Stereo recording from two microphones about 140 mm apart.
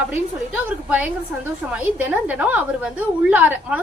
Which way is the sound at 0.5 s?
10° right (ahead or behind).